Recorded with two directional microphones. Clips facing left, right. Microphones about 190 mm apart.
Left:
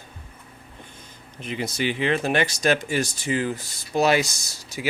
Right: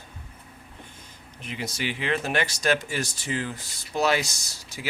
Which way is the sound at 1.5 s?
20° left (ahead or behind).